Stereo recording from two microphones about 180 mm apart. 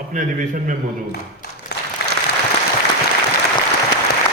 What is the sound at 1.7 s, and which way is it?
Applause, 70° left (ahead or behind).